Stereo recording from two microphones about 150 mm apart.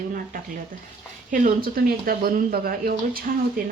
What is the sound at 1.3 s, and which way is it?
Speech, 70° right (ahead or behind).